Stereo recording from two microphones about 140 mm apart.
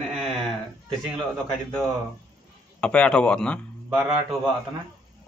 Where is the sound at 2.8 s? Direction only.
5° left (ahead or behind).